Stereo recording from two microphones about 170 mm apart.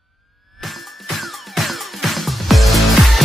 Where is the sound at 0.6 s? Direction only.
Centre (ahead or behind).